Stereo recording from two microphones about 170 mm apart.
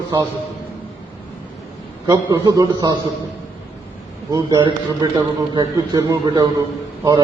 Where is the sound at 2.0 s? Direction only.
20° right (ahead or behind).